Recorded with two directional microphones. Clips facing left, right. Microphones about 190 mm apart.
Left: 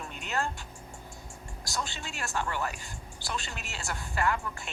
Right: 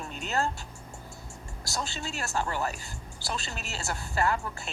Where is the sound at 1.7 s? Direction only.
35° right (ahead or behind).